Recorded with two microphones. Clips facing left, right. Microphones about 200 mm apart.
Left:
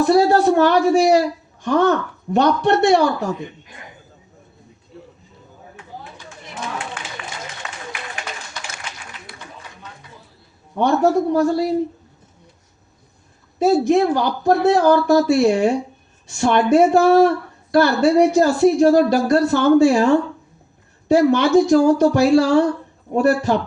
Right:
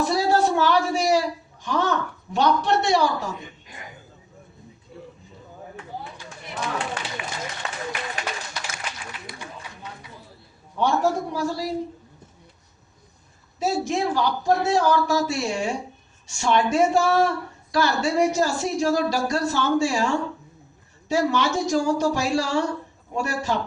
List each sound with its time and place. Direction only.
0.0 s speech: 55° left (ahead or behind)
7.2 s a sound: 15° right (ahead or behind)
10.8 s speech: 55° left (ahead or behind)
13.6 s speech: 60° left (ahead or behind)